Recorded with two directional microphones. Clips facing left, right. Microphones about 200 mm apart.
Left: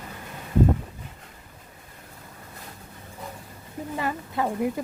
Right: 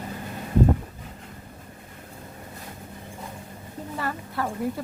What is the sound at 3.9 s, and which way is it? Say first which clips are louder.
Speech: left 2 dB; 15° left (ahead or behind).